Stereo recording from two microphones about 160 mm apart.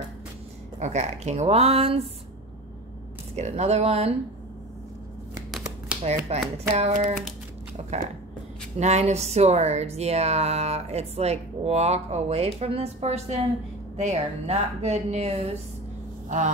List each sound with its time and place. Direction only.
0.7 s speech: 45° right (ahead or behind)
3.3 s speech: 45° right (ahead or behind)
6.3 s speech: 40° right (ahead or behind)
8.7 s speech: 45° right (ahead or behind)